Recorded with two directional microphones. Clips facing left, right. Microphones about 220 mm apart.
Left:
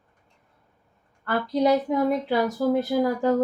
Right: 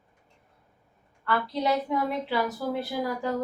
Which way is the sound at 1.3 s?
45° left (ahead or behind).